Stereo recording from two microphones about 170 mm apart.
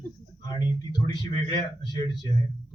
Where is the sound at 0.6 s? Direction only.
25° left (ahead or behind).